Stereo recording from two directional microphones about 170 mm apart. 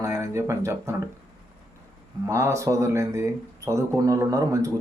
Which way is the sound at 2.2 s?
15° right (ahead or behind).